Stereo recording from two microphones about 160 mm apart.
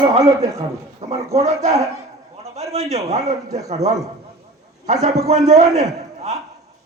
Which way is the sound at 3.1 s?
45° right (ahead or behind).